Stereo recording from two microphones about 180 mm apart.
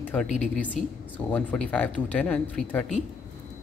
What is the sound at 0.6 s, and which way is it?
Speech, 10° left (ahead or behind).